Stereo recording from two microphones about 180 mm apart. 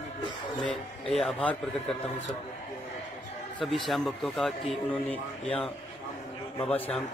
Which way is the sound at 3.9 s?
Centre (ahead or behind).